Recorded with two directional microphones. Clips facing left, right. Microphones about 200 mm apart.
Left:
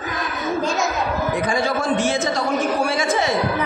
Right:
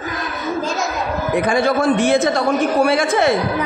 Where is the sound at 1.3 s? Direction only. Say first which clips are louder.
Right 8 dB; 60° right (ahead or behind).